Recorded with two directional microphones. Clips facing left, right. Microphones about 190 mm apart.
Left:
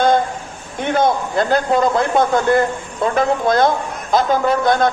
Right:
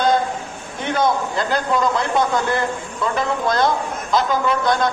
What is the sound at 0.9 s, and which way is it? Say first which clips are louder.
A man's voice: left 3 dB; 50° left (ahead or behind).